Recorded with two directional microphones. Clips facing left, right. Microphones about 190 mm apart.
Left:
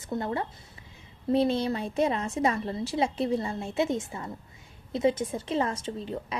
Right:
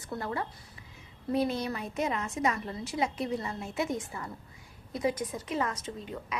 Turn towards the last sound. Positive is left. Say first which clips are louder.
# left 5 dB
turn(degrees=30)  # may be behind; listen again after turning